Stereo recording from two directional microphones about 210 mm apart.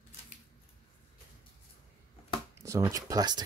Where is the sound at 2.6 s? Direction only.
15° right (ahead or behind).